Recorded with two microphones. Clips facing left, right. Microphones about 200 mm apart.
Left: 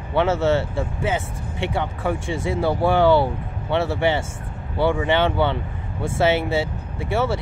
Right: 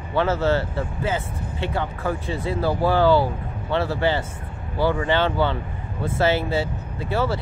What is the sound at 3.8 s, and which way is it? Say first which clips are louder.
Speech: left 1 dB; 25° left (ahead or behind).